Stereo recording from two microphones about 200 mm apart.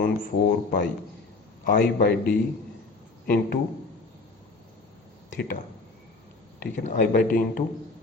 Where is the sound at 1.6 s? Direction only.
50° left (ahead or behind).